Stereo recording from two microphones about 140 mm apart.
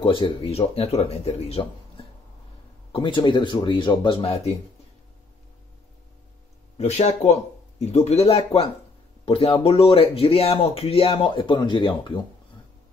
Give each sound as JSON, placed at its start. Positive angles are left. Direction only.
{"t": 0.0, "sound": "speech", "side_deg": 35}
{"t": 6.8, "sound": "speech", "side_deg": 55}